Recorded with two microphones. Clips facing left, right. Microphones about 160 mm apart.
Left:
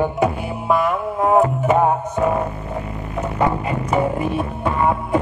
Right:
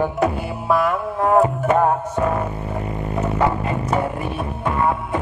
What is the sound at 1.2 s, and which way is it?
Music, 10° left (ahead or behind).